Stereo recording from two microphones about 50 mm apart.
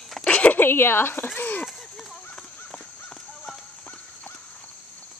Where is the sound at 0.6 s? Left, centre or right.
Left.